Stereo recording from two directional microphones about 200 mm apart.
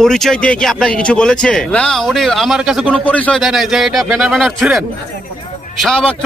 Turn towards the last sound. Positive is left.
turn(degrees=5)  # may be behind; listen again after turning